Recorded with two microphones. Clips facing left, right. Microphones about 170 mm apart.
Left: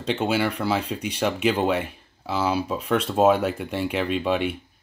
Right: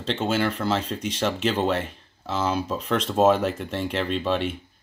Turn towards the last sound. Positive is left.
turn(degrees=10)  # may be behind; listen again after turning